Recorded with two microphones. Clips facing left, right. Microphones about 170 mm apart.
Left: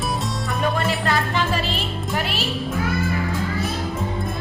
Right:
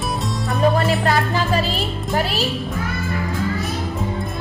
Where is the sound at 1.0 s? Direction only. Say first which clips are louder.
Right 3 dB; 40° right (ahead or behind).